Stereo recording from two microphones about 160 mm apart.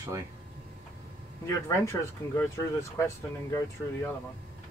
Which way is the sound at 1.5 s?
15° left (ahead or behind).